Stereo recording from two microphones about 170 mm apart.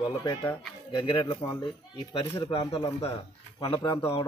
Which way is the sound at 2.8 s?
20° left (ahead or behind).